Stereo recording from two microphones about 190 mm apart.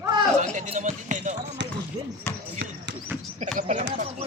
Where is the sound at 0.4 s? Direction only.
40° right (ahead or behind).